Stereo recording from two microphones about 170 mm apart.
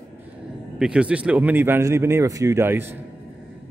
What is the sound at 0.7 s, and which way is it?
A man's voice, 5° right (ahead or behind).